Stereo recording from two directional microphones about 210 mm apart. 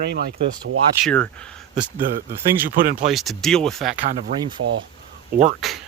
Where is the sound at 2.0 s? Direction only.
40° right (ahead or behind).